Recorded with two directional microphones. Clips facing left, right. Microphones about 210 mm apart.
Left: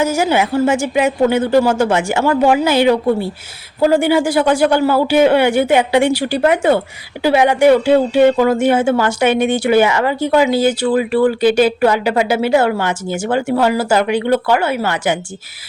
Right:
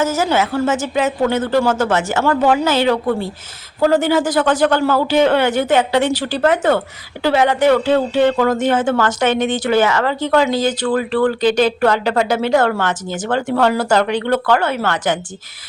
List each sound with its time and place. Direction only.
0.0 s speech: 15° left (ahead or behind)